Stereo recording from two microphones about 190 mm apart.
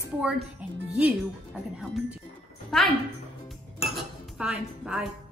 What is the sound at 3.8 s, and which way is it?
Dishes, centre (ahead or behind).